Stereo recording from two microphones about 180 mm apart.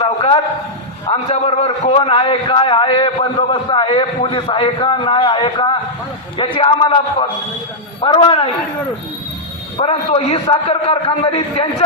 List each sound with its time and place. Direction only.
0.0 s a man's voice: 30° left (ahead or behind)
9.7 s a man's voice: 35° left (ahead or behind)